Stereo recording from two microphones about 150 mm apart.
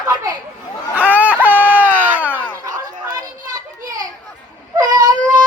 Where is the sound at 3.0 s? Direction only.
25° right (ahead or behind).